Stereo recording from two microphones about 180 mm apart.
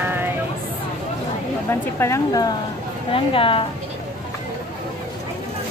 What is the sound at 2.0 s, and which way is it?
A woman's voice, 20° left (ahead or behind).